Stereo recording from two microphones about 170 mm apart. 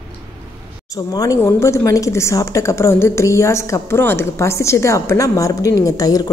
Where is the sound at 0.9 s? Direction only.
20° left (ahead or behind).